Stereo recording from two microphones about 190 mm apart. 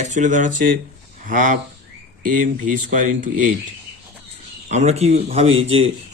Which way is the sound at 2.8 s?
40° right (ahead or behind).